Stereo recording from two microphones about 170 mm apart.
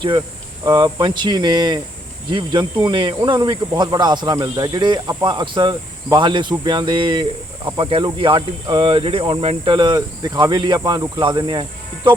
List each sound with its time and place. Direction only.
0.6 s speech: 25° right (ahead or behind)